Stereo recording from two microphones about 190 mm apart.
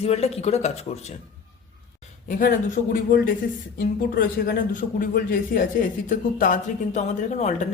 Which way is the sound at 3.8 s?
50° left (ahead or behind).